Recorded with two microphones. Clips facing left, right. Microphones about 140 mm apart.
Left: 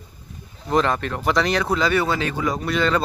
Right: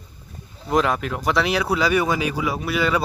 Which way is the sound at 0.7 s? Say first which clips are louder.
Even; 5° right (ahead or behind).